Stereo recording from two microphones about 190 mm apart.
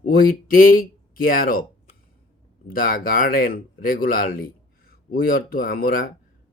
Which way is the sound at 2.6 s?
50° left (ahead or behind).